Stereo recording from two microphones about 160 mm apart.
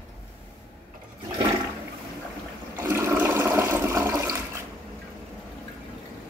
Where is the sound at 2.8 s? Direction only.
15° right (ahead or behind).